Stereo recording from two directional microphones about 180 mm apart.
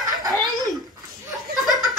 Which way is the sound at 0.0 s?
20° right (ahead or behind).